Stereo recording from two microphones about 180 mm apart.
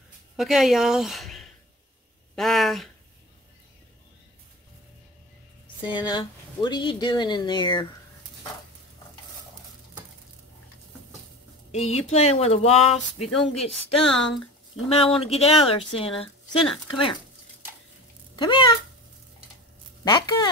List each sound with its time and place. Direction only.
0.4 s speech: centre (ahead or behind)
5.9 s speech: 25° left (ahead or behind)
11.7 s speech: 35° left (ahead or behind)
14.1 s speech: 5° left (ahead or behind)
14.9 s speech: 30° left (ahead or behind)
16.6 s speech: centre (ahead or behind)
18.4 s speech: 25° left (ahead or behind)
20.1 s speech: 25° left (ahead or behind)